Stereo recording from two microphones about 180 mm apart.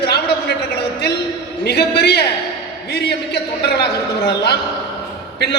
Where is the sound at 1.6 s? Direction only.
65° left (ahead or behind).